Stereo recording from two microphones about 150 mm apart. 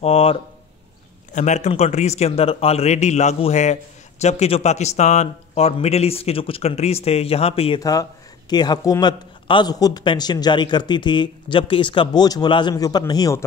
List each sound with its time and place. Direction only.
0.0 s speech: 40° left (ahead or behind)
1.3 s a man's voice: 55° left (ahead or behind)
7.8 s a man's voice: 25° left (ahead or behind)